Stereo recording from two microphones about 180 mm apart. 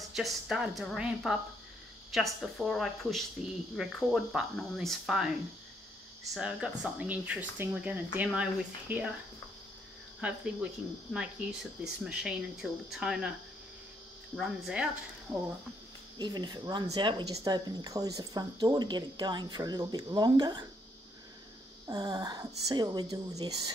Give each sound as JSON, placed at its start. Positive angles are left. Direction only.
{"t": 0.1, "sound": "speech", "side_deg": 0}
{"t": 6.3, "sound": "speech", "side_deg": -5}
{"t": 10.2, "sound": "speech", "side_deg": -5}
{"t": 14.3, "sound": "speech", "side_deg": -5}
{"t": 16.2, "sound": "speech", "side_deg": -25}
{"t": 21.8, "sound": "speech", "side_deg": -20}